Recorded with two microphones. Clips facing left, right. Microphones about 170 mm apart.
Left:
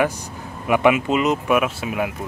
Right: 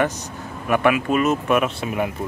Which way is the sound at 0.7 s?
20° left (ahead or behind).